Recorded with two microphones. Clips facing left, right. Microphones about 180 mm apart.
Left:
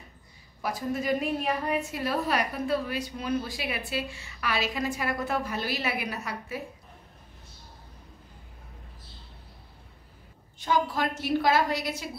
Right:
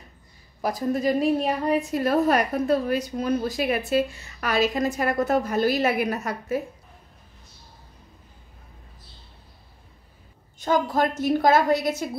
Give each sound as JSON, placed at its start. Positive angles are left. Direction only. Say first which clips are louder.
{"t": 0.6, "sound": "a woman's voice", "louder": "right 6 dB", "side_deg": -40}
{"t": 10.6, "sound": "a woman's voice", "louder": "right 5 dB", "side_deg": -45}